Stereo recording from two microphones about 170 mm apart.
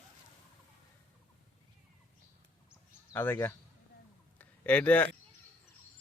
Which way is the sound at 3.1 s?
15° left (ahead or behind).